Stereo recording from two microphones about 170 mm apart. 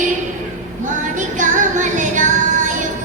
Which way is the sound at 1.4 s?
45° right (ahead or behind).